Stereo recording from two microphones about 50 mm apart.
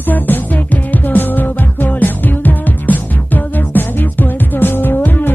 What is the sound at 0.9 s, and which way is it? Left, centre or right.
Music, left.